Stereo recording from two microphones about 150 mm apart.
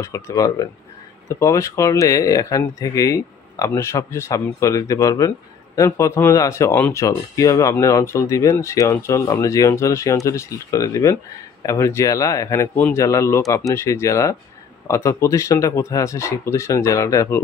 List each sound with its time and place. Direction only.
0.0 s speech: 20° left (ahead or behind)